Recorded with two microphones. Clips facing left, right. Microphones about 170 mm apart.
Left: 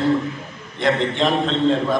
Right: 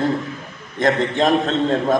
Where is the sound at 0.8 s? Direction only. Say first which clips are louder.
Right 2 dB; 45° right (ahead or behind).